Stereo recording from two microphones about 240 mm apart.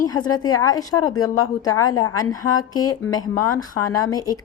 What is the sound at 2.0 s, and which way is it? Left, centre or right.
A woman's voice, centre.